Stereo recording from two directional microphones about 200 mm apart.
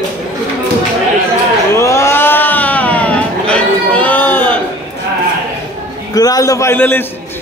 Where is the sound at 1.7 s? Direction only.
15° left (ahead or behind).